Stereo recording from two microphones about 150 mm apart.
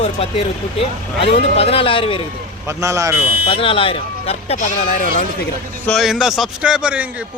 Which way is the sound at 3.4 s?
35° left (ahead or behind).